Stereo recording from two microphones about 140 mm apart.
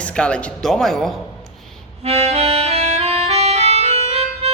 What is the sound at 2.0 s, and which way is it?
Music, 50° right (ahead or behind).